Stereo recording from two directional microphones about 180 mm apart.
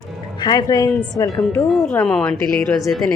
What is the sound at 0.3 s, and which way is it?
A woman's voice, 20° left (ahead or behind).